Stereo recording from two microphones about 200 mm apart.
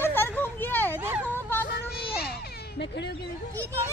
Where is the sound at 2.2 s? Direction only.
50° left (ahead or behind).